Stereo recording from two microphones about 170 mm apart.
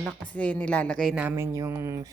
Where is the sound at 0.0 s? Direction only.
5° left (ahead or behind).